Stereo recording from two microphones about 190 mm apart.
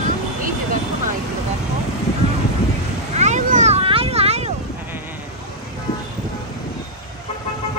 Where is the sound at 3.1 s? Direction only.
40° right (ahead or behind).